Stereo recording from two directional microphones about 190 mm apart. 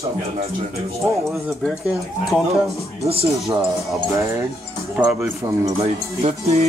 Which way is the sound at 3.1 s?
30° right (ahead or behind).